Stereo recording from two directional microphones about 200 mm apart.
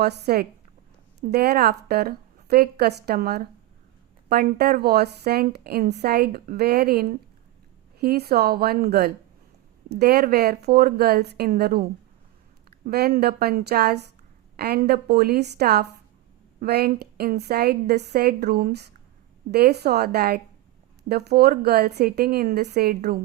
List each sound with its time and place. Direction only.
0.0 s a woman's voice: 50° right (ahead or behind)